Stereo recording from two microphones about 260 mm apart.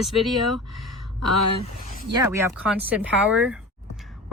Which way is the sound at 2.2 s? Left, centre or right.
Centre.